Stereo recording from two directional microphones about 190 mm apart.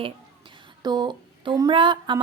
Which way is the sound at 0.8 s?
20° right (ahead or behind).